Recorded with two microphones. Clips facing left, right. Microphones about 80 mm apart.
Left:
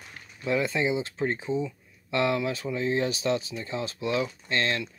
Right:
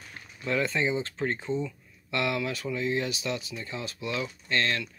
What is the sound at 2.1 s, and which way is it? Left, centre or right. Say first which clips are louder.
Speech: left 3 dB; left.